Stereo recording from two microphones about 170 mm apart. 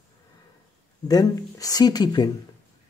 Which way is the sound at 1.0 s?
20° left (ahead or behind).